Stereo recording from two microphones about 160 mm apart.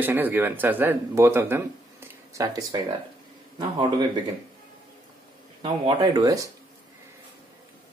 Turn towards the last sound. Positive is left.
turn(degrees=-20)  # may be behind; listen again after turning